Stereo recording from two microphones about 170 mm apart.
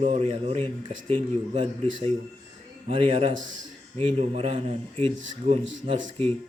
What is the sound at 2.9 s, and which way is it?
Speech, 30° right (ahead or behind).